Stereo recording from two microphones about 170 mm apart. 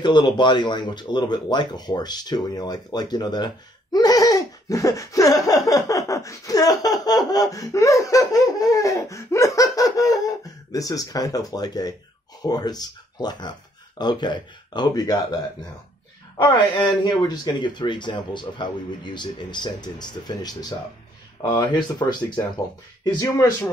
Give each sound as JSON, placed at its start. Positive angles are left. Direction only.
{"t": 0.0, "sound": "speech", "side_deg": 25}
{"t": 16.3, "sound": "speech", "side_deg": 30}